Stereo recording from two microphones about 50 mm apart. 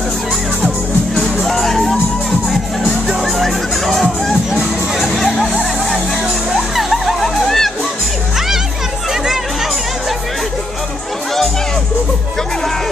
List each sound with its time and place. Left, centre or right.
1.1 s music: centre
3.1 s music: centre
9.1 s chatter: centre